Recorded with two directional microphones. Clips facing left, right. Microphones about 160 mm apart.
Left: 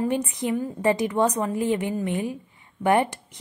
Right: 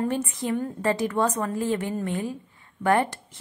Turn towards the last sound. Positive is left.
turn(degrees=15)  # may be behind; listen again after turning